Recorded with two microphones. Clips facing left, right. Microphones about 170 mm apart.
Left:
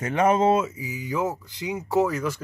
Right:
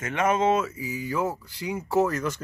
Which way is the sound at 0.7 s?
15° left (ahead or behind).